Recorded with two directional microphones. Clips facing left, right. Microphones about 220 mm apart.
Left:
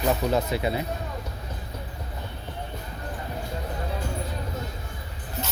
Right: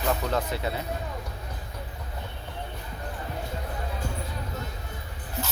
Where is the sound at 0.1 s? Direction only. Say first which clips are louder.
Left 3 dB; 10° left (ahead or behind).